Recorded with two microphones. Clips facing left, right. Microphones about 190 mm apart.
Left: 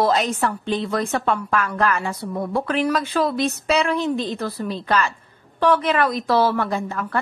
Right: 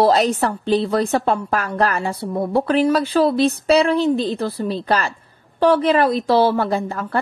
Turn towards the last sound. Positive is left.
turn(degrees=-35)  # may be behind; listen again after turning